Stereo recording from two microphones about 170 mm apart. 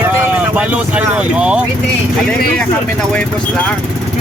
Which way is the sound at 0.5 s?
5° right (ahead or behind).